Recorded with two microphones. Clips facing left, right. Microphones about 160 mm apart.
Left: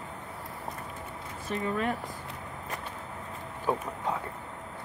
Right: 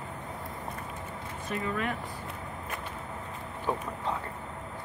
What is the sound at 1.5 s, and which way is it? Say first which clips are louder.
Speech: left 2 dB; 35° left (ahead or behind).